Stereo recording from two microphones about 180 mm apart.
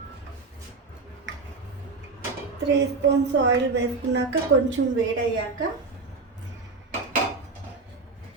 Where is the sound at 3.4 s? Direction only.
75° right (ahead or behind).